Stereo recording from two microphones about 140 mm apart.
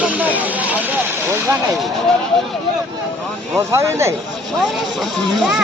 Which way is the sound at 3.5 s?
20° right (ahead or behind).